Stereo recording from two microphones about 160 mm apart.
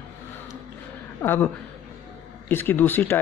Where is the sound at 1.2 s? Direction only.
15° left (ahead or behind).